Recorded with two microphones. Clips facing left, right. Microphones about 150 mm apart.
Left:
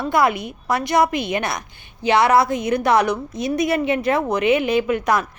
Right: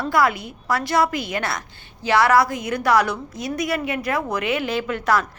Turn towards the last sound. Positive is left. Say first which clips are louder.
# left 3 dB
turn(degrees=15)  # may be behind; listen again after turning